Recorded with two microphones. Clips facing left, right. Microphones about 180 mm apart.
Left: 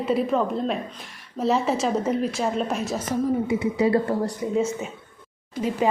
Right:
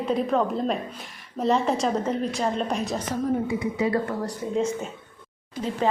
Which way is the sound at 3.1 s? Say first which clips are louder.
Left 3 dB; 20° left (ahead or behind).